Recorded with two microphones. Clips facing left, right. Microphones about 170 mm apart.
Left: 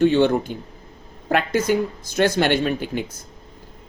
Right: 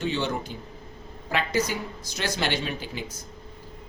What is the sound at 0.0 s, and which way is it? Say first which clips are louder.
Speech: left 11 dB; 55° left (ahead or behind).